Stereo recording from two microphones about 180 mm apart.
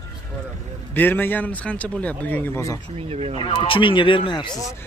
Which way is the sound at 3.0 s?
35° right (ahead or behind).